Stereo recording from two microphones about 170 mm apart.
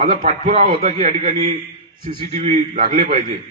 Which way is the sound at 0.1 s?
45° right (ahead or behind).